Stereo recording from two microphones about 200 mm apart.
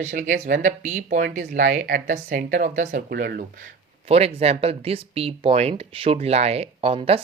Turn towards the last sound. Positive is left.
turn(degrees=-30)  # may be behind; listen again after turning